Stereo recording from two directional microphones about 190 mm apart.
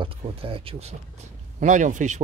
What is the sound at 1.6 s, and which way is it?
Speech, 40° right (ahead or behind).